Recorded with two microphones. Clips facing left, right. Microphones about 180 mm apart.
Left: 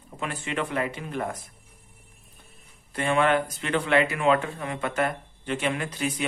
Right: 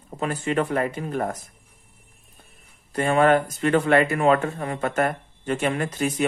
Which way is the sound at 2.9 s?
45° right (ahead or behind).